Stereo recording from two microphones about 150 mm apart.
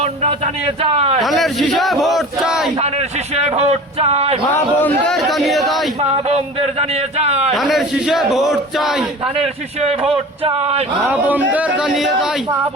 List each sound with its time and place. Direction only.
0.0 s speech: 45° right (ahead or behind)
1.2 s a man's voice: centre (ahead or behind)
2.7 s speech: 45° right (ahead or behind)
4.8 s a man's voice: 5° left (ahead or behind)
6.1 s speech: 45° right (ahead or behind)
7.5 s a man's voice: centre (ahead or behind)
9.8 s speech: 40° right (ahead or behind)
11.1 s speech: 10° right (ahead or behind)